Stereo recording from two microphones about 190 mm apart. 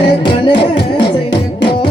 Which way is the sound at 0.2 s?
25° left (ahead or behind).